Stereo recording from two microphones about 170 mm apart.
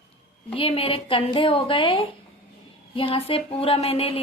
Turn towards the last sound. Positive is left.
turn(degrees=35)  # may be behind; listen again after turning